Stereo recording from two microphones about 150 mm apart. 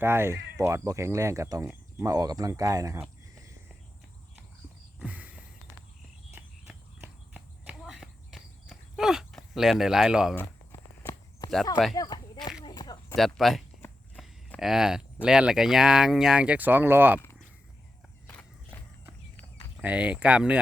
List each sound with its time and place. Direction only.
0.0 s speech: 15° right (ahead or behind)
4.9 s a sound: 10° right (ahead or behind)
6.3 s walk: 10° right (ahead or behind)
10.3 s walk: 15° left (ahead or behind)
11.9 s a sound: 30° left (ahead or behind)
13.1 s speech: centre (ahead or behind)
18.3 s walk: 10° left (ahead or behind)
19.8 s speech: 10° right (ahead or behind)